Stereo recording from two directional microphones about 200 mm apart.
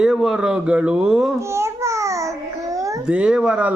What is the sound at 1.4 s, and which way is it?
Babbling, 15° right (ahead or behind).